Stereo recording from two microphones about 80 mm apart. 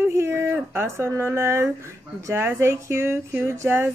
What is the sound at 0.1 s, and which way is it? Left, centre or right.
A woman's voice, right.